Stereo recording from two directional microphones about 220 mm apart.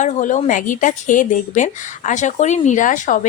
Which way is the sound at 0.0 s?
35° left (ahead or behind).